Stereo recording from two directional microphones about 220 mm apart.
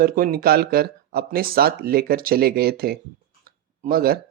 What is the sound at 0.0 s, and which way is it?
Speech, 40° right (ahead or behind).